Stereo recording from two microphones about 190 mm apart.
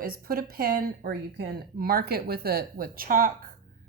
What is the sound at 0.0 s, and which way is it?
Speech, 50° right (ahead or behind).